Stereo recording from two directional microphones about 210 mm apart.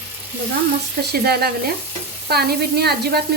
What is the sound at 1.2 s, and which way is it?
Speech, 45° right (ahead or behind).